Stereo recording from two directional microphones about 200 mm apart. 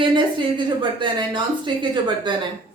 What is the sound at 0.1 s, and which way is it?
Speech, 25° right (ahead or behind).